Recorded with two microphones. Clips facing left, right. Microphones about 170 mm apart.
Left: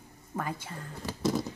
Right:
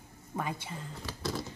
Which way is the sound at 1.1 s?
20° left (ahead or behind).